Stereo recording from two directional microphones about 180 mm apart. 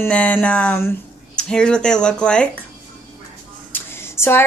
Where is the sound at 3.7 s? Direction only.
15° left (ahead or behind).